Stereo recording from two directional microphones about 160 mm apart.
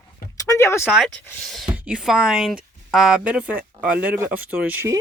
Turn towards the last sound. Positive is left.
turn(degrees=-15)  # may be behind; listen again after turning